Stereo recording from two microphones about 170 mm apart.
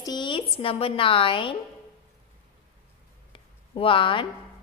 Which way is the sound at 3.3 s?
30° left (ahead or behind).